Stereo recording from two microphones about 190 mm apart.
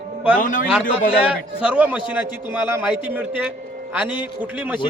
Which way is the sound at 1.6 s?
5° right (ahead or behind).